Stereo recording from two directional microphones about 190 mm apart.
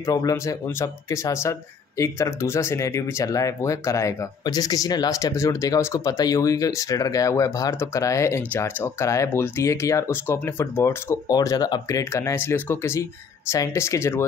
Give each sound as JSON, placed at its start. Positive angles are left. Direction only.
{"t": 0.0, "sound": "speech", "side_deg": 15}